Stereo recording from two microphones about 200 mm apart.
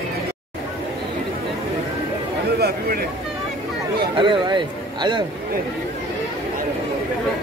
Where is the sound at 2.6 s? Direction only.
50° right (ahead or behind).